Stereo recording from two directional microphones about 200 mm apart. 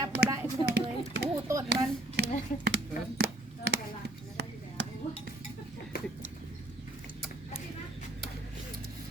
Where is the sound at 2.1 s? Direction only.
55° right (ahead or behind).